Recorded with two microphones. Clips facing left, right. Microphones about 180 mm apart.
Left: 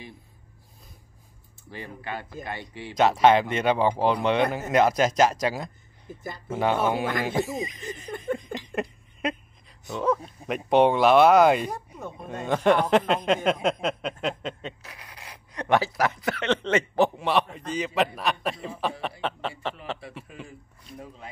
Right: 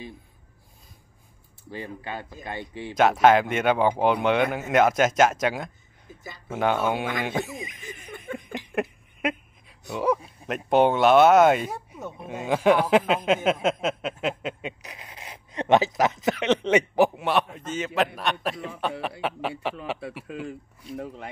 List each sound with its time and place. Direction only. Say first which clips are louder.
2.0 s speech: even; 15° right (ahead or behind)
3.0 s speech: right 1 dB; centre (ahead or behind)
6.1 s speech: left 5 dB; 50° left (ahead or behind)
6.5 s speech: even; centre (ahead or behind)
8.5 s a sound: right 2 dB; 10° right (ahead or behind)
10.4 s speech: left 1 dB; centre (ahead or behind)
14.9 s speech: right 3 dB; 20° right (ahead or behind); by 19.1 s centre (ahead or behind)
20.4 s speech: right 10 dB; 70° right (ahead or behind)